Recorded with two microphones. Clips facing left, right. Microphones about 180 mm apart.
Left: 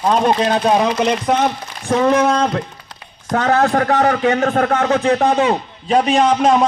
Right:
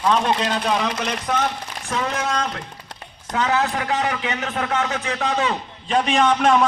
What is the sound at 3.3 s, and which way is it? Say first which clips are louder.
A man's voice: left 7 dB; 55° left (ahead or behind).